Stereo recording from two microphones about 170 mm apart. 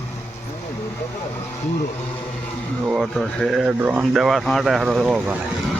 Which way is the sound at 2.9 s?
Centre (ahead or behind).